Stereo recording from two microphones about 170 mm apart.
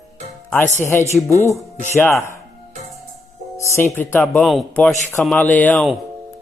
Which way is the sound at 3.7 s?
15° left (ahead or behind).